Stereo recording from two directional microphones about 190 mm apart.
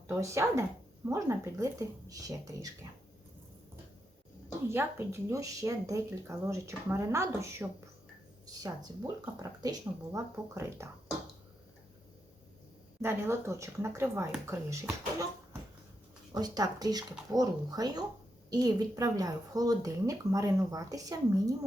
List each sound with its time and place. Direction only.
0.1 s speech: 15° right (ahead or behind)
4.7 s speech: 10° right (ahead or behind)
9.2 s speech: 15° right (ahead or behind)
13.0 s speech: 15° right (ahead or behind)
16.3 s speech: 20° right (ahead or behind)